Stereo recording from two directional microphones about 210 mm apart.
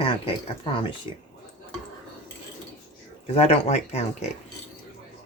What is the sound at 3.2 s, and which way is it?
Speech, 30° left (ahead or behind).